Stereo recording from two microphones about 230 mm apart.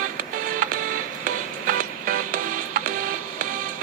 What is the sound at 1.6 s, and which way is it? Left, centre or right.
Music, right.